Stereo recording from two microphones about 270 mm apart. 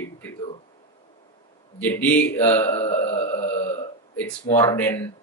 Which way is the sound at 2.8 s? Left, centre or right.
Left.